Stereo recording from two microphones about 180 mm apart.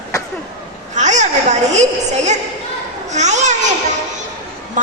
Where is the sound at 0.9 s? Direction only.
40° right (ahead or behind).